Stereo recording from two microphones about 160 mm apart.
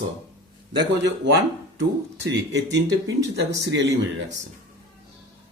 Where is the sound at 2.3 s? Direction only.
90° right.